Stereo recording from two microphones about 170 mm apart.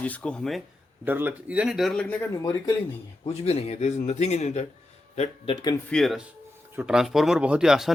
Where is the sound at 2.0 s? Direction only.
20° left (ahead or behind).